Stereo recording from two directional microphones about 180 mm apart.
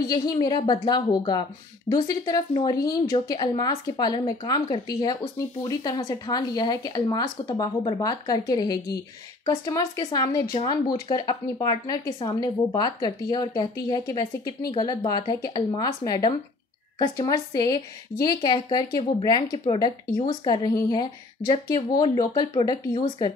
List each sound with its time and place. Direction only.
0.0 s speech: 20° left (ahead or behind)